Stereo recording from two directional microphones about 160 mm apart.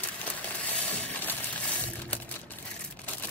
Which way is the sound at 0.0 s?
10° left (ahead or behind).